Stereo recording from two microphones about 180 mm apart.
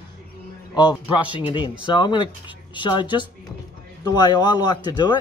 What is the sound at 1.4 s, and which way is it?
Speech, 25° left (ahead or behind).